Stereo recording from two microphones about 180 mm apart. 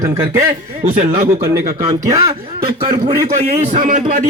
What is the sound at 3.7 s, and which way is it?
Speech, 50° right (ahead or behind).